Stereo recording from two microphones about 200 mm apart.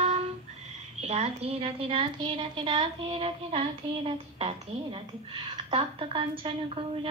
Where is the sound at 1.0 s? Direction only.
30° right (ahead or behind).